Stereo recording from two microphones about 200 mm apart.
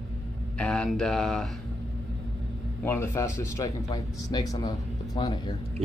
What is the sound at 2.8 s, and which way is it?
Speech, 10° left (ahead or behind).